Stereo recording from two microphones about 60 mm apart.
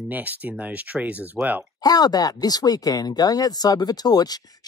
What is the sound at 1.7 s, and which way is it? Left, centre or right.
Speech, left.